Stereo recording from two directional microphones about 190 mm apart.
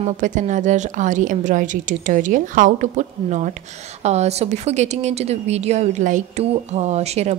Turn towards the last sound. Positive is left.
turn(degrees=-35)  # may be behind; listen again after turning